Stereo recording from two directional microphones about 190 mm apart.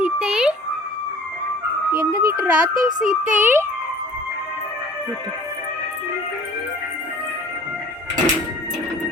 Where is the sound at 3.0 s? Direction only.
40° right (ahead or behind).